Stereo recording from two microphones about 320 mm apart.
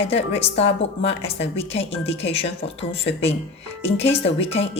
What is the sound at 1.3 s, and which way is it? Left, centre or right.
Speech, left.